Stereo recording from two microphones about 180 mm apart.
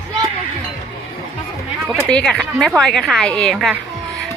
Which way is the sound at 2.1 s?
5° left (ahead or behind).